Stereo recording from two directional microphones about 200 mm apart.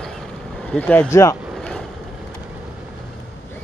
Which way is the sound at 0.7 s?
10° left (ahead or behind).